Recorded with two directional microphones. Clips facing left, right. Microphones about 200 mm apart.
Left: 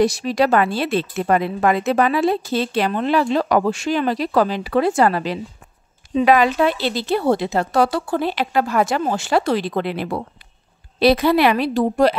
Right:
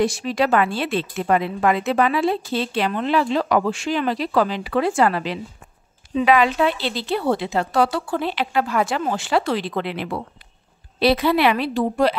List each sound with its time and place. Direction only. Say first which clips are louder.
0.0 s a woman's voice: left 3 dB; 40° left (ahead or behind)